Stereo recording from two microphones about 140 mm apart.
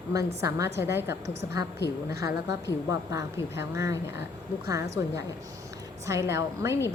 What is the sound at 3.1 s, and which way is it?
A woman's voice, 20° right (ahead or behind).